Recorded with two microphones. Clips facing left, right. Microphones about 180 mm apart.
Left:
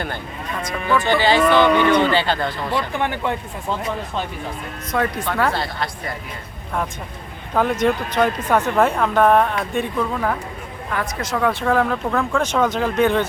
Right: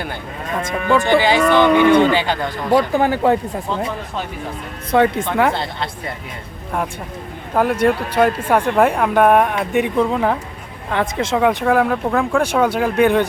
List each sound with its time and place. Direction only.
1.0 s speech: 15° right (ahead or behind)
2.6 s speech: 40° right (ahead or behind)
4.9 s speech: 25° right (ahead or behind)
7.5 s speech: 10° right (ahead or behind)
11.6 s speech: 5° right (ahead or behind)